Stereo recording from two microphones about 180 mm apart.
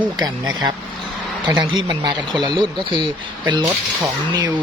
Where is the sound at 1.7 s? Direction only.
25° right (ahead or behind).